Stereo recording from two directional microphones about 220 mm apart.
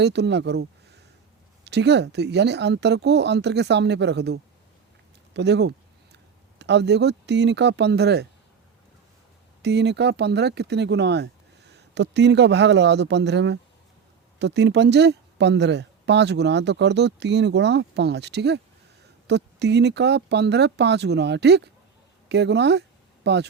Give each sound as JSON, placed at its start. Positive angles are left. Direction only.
{"t": 0.0, "sound": "speech", "side_deg": -50}
{"t": 9.6, "sound": "speech", "side_deg": -50}